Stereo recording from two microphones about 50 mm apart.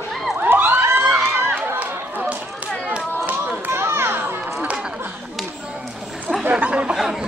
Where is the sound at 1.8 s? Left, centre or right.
Right.